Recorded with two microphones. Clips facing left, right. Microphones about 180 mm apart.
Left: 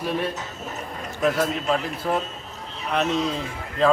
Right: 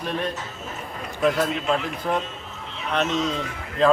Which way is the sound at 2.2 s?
40° left (ahead or behind).